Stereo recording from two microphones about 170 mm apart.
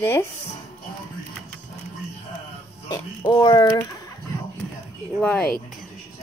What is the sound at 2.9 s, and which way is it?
Speech, 20° left (ahead or behind).